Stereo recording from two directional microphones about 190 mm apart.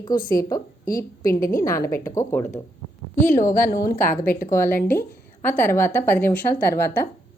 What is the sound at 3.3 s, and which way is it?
Speech, 40° left (ahead or behind).